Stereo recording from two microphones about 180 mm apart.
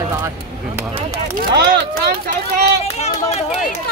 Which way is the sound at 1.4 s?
60° right (ahead or behind).